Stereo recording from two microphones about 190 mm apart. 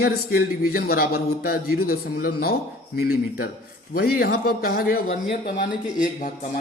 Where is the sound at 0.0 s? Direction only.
50° left (ahead or behind).